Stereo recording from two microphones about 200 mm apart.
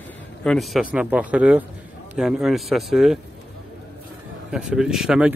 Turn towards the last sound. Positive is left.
turn(degrees=-5)  # may be behind; listen again after turning